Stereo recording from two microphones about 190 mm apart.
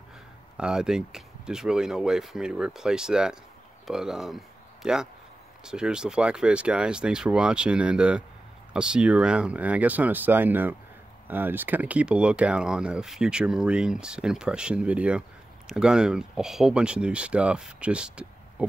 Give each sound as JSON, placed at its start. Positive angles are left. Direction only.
{"t": 0.6, "sound": "speech", "side_deg": -5}